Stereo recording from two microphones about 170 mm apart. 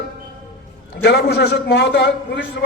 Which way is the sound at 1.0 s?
75° left (ahead or behind).